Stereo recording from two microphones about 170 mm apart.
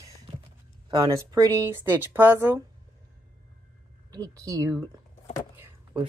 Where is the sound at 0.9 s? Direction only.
20° right (ahead or behind).